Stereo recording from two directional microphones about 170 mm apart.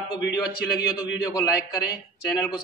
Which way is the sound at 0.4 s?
20° left (ahead or behind).